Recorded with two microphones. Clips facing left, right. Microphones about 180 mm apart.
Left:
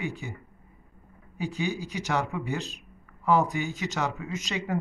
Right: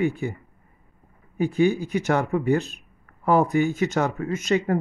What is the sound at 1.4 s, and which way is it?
Speech, 55° right (ahead or behind).